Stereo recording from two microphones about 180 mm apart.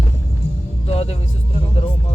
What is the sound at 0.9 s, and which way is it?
Music, 35° left (ahead or behind).